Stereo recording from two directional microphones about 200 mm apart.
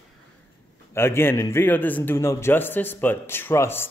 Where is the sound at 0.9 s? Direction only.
10° left (ahead or behind).